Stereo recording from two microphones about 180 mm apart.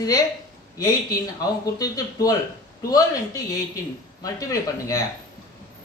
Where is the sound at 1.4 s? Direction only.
20° left (ahead or behind).